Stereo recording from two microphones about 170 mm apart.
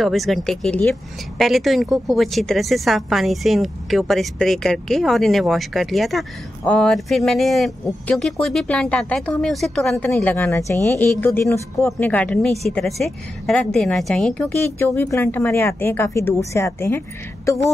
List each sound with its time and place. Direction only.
0.0 s a woman's voice: centre (ahead or behind); by 17.6 s 15° left (ahead or behind)